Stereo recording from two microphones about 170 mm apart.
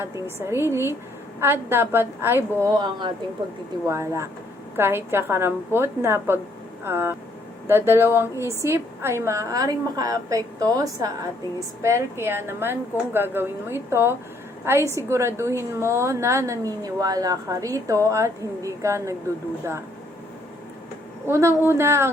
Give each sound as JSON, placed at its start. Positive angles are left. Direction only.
{"t": 0.4, "sound": "a woman's voice", "side_deg": -15}
{"t": 21.2, "sound": "a woman's voice", "side_deg": -15}